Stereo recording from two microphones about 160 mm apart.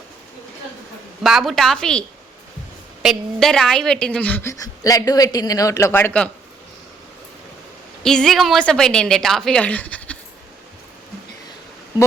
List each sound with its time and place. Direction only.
1.2 s a woman's voice: centre (ahead or behind)
4.6 s a man's voice: 20° left (ahead or behind)
8.0 s a woman's voice: 5° left (ahead or behind)